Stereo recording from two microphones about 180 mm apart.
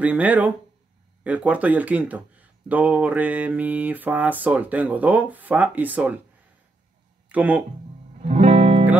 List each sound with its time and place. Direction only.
0.0 s speech: 10° right (ahead or behind)
7.2 s speech: 10° right (ahead or behind)
8.2 s music: 40° right (ahead or behind)